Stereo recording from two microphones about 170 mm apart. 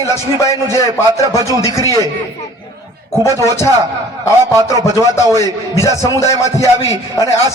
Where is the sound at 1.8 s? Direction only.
20° left (ahead or behind).